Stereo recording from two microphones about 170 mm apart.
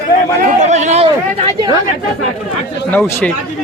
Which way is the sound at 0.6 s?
45° right (ahead or behind).